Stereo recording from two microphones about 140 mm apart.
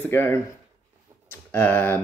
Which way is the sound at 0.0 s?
15° left (ahead or behind).